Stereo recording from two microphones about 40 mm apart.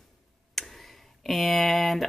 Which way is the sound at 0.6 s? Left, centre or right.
Centre.